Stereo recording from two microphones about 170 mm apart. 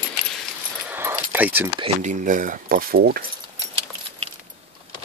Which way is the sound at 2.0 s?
45° right (ahead or behind).